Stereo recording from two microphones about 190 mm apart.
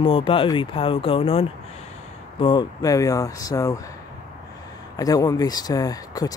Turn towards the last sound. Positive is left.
turn(degrees=20)  # may be behind; listen again after turning